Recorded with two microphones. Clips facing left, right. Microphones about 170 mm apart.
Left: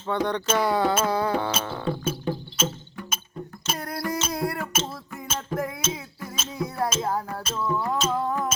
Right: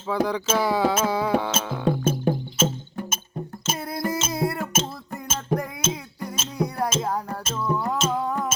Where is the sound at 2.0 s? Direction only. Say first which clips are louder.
Right 5 dB; 45° right (ahead or behind).